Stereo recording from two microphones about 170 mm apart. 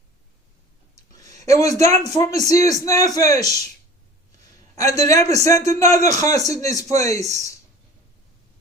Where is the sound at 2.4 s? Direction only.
20° left (ahead or behind).